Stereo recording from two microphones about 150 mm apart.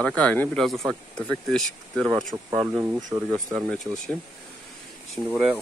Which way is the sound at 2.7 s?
20° right (ahead or behind).